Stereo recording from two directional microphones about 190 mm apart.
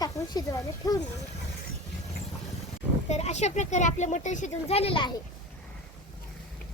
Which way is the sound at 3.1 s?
35° left (ahead or behind).